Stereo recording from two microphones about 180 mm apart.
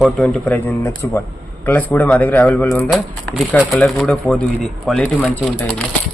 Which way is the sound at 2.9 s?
Centre (ahead or behind).